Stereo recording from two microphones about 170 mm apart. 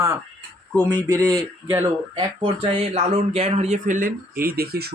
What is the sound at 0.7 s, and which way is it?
Speech, 10° left (ahead or behind).